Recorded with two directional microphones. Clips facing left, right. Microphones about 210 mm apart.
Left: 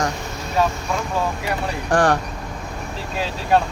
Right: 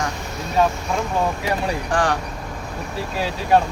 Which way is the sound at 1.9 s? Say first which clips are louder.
Left 5 dB; 55° left (ahead or behind).